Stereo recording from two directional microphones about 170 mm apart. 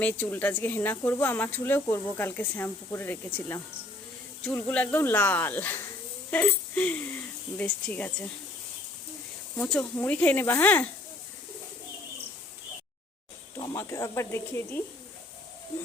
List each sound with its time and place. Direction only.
0.0 s speech: 10° left (ahead or behind)
9.6 s speech: 10° left (ahead or behind)
13.7 s speech: 20° left (ahead or behind)